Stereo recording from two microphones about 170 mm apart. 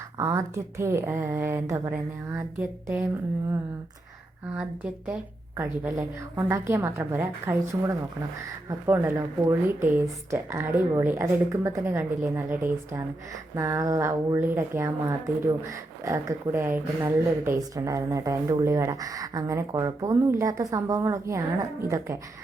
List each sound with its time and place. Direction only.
0.2 s speech: 15° right (ahead or behind)
4.5 s a woman's voice: 10° right (ahead or behind)